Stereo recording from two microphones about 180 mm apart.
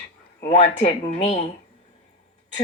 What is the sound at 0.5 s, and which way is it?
Speech, 40° left (ahead or behind).